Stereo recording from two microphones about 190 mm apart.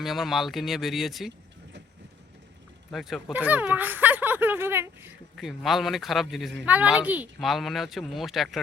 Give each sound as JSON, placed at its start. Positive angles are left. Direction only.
{"t": 0.0, "sound": "speech", "side_deg": 0}
{"t": 2.9, "sound": "speech", "side_deg": 0}
{"t": 5.4, "sound": "speech", "side_deg": 0}